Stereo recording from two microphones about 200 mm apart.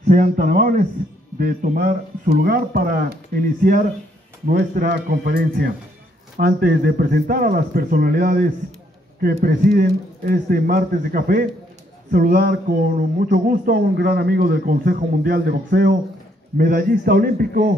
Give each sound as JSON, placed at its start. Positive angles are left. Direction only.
{"t": 0.1, "sound": "speech", "side_deg": -40}